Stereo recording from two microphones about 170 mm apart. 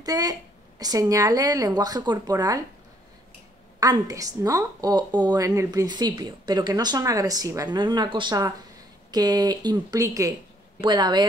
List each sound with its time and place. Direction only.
0.0 s speech: 20° right (ahead or behind)
3.8 s speech: 20° right (ahead or behind)